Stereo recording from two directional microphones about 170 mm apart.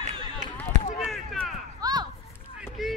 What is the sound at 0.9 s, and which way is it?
Basketball bounce, centre (ahead or behind).